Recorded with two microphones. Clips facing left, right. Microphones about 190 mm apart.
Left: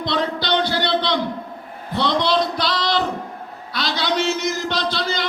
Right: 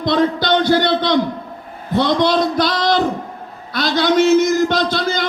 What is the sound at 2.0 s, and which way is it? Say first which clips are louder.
A man's voice: right 4 dB; 50° right (ahead or behind).